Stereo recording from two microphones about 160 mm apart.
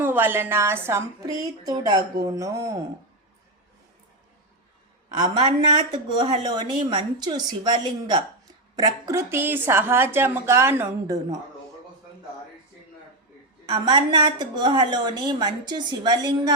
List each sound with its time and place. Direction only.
0.0 s a woman's voice: 10° right (ahead or behind)
5.1 s a woman's voice: 25° right (ahead or behind)
13.7 s a woman's voice: 30° right (ahead or behind)